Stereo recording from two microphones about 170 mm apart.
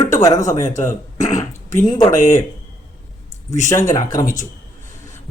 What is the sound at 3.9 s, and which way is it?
Speech, 50° left (ahead or behind).